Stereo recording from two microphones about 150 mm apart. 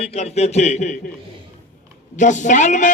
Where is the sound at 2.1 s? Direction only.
55° left (ahead or behind).